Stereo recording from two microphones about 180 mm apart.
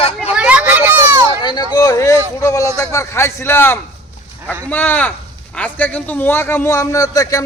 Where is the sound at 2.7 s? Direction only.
15° left (ahead or behind).